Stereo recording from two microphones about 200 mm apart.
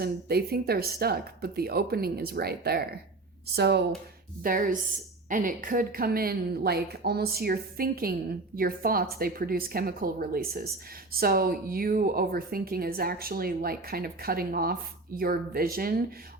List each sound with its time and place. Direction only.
0.0 s a woman's voice: 50° right (ahead or behind)
4.4 s a woman's voice: 45° right (ahead or behind)